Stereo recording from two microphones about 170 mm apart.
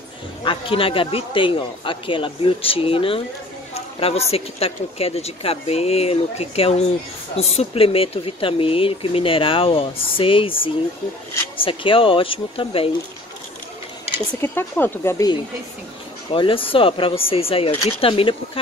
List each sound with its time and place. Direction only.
0.4 s speech: 30° left (ahead or behind)
14.4 s speech: 15° left (ahead or behind)
16.3 s speech: 30° left (ahead or behind)